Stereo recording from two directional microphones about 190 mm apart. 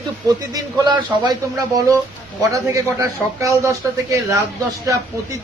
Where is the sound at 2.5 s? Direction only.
15° right (ahead or behind).